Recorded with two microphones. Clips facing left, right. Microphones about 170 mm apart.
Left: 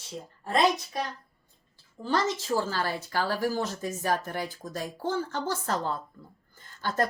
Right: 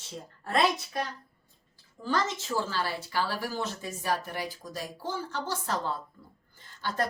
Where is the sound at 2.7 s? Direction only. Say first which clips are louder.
Left 1 dB; 45° left (ahead or behind).